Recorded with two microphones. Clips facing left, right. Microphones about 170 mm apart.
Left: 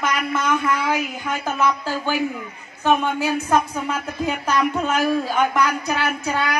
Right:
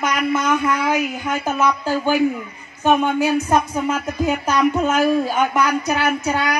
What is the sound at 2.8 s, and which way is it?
Speech, 15° right (ahead or behind).